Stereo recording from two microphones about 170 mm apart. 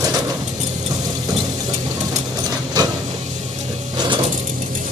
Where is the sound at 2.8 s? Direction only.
25° right (ahead or behind).